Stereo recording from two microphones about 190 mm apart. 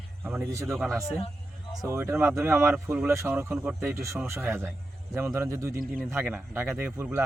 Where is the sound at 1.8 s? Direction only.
15° right (ahead or behind).